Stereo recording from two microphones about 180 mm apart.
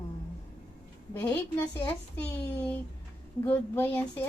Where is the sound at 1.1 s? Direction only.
10° left (ahead or behind).